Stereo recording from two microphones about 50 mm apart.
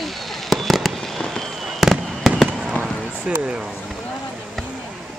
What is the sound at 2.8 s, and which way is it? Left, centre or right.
Basketball bounce, left.